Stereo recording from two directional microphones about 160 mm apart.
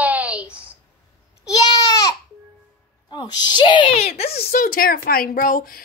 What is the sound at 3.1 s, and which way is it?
A woman's voice, 25° left (ahead or behind).